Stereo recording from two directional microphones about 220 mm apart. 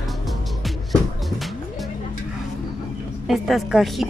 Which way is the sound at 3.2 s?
Centre (ahead or behind).